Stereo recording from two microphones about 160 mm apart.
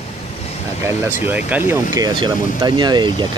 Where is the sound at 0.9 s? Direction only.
10° right (ahead or behind); by 3.3 s 30° right (ahead or behind).